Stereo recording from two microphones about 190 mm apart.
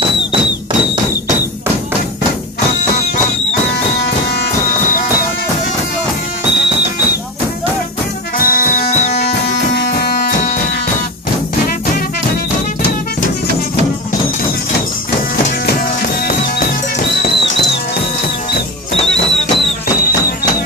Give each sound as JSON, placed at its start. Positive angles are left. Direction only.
{"t": 8.4, "sound": "music", "side_deg": 50}
{"t": 9.8, "sound": "music", "side_deg": 55}
{"t": 15.6, "sound": "music", "side_deg": 50}
{"t": 20.0, "sound": "music", "side_deg": 50}